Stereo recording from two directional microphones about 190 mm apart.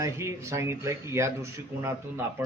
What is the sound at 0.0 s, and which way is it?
Speech, 15° right (ahead or behind).